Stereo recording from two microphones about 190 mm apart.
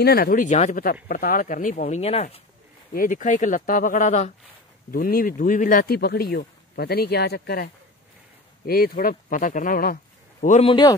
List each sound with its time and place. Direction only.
0.0 s speech: 55° left (ahead or behind); by 2.4 s 35° left (ahead or behind)
2.9 s speech: 45° left (ahead or behind)
10.7 s a man's voice: 25° left (ahead or behind)